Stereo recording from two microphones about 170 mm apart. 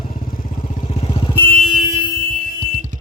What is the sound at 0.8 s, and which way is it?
Vehicle, 40° left (ahead or behind).